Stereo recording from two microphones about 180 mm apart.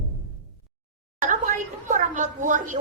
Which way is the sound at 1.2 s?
45° right (ahead or behind).